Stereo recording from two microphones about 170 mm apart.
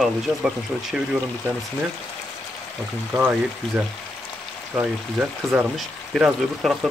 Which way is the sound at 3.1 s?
10° right (ahead or behind).